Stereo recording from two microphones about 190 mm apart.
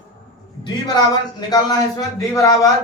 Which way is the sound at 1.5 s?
20° left (ahead or behind).